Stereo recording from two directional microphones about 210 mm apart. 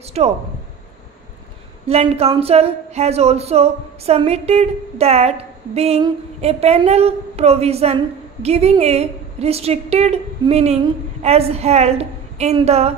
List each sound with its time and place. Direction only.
0.2 s speech: 30° right (ahead or behind)
1.9 s speech: 30° right (ahead or behind)